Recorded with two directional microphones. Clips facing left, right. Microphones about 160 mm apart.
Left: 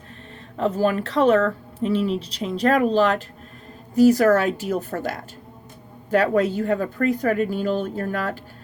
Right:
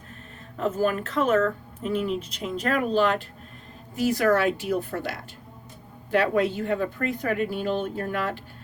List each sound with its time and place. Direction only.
0.5 s speech: 35° left (ahead or behind)